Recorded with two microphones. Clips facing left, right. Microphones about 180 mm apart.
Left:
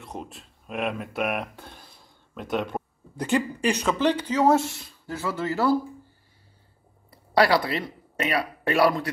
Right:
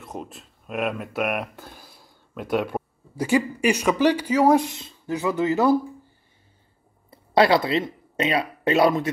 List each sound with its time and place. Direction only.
0.0 s speech: centre (ahead or behind); by 5.8 s 20° right (ahead or behind)
7.1 s speech: 25° right (ahead or behind)